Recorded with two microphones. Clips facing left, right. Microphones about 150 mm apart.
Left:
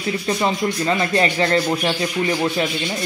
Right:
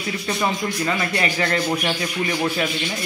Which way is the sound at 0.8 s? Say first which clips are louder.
Left 5 dB; 30° left (ahead or behind).